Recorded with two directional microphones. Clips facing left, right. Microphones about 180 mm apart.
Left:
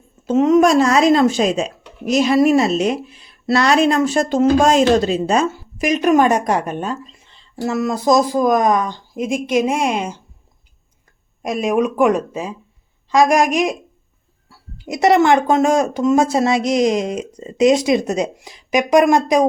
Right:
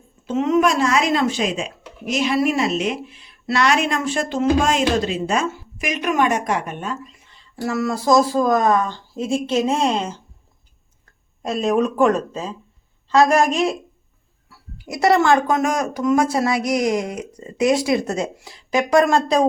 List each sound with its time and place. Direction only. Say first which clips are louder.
0.3 s speech: left 5 dB; 40° left (ahead or behind); by 10.2 s 10° left (ahead or behind)
11.4 s speech: left 1 dB; 10° left (ahead or behind)